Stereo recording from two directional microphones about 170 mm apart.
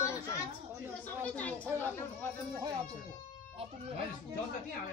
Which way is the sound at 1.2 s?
10° left (ahead or behind).